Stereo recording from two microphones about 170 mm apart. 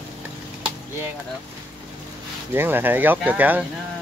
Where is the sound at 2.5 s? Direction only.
10° right (ahead or behind).